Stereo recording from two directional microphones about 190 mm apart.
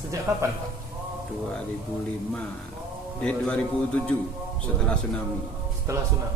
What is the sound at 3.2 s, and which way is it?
Speech, 5° left (ahead or behind).